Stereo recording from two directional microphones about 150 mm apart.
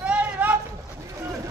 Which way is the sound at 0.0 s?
10° right (ahead or behind).